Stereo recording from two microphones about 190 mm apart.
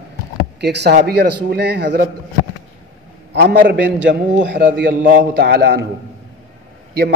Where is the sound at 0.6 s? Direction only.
60° right (ahead or behind).